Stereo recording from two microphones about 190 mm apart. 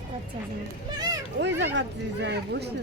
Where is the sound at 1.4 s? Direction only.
65° right (ahead or behind).